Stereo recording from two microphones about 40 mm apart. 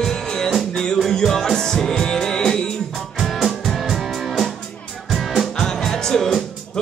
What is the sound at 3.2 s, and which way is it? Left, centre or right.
Music, centre.